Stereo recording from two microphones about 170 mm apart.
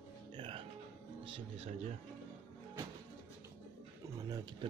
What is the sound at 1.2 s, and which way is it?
Speech, 35° right (ahead or behind).